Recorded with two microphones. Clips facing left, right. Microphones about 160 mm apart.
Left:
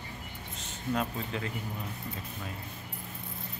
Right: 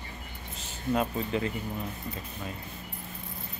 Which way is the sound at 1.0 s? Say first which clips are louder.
Right 6 dB; 5° right (ahead or behind).